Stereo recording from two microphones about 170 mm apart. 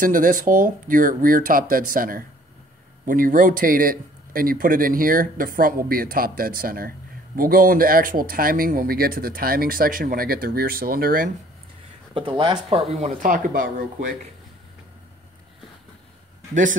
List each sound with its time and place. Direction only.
0.0 s speech: 55° right (ahead or behind)
12.1 s speech: 30° right (ahead or behind); by 13.8 s 55° right (ahead or behind)